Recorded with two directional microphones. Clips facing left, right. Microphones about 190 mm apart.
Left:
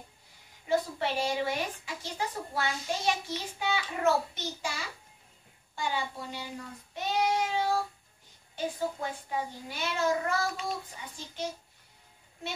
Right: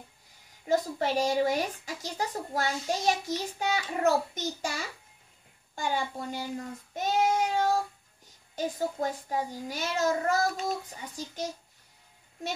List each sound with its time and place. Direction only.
0.7 s a woman's voice: 40° right (ahead or behind)
6.9 s child singing: 45° right (ahead or behind)
8.5 s a child's voice: 40° right (ahead or behind)